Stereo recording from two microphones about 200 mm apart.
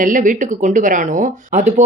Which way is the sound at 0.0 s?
40° right (ahead or behind).